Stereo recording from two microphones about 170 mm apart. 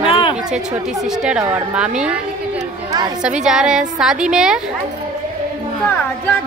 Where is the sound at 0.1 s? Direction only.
30° left (ahead or behind).